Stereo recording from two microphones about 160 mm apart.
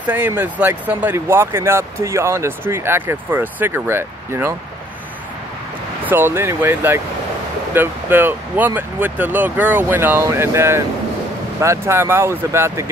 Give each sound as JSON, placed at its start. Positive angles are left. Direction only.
{"t": 0.0, "sound": "speech", "side_deg": -10}
{"t": 6.0, "sound": "speech", "side_deg": -15}